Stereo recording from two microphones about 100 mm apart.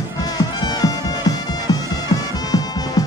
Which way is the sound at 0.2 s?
40° left (ahead or behind).